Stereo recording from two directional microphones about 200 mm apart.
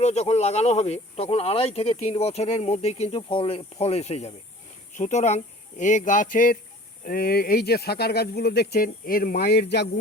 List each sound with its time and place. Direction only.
0.0 s speech: 35° left (ahead or behind); by 9.9 s 55° left (ahead or behind)